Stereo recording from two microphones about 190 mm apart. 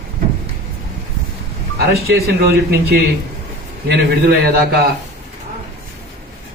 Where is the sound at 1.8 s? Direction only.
55° right (ahead or behind).